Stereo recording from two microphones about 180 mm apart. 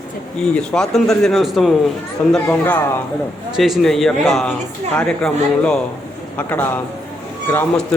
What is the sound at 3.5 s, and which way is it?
A man's voice, centre (ahead or behind).